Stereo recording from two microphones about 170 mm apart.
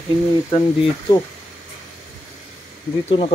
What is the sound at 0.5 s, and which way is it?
Speech, 25° left (ahead or behind).